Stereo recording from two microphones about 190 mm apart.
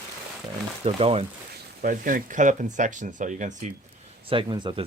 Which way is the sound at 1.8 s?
45° right (ahead or behind).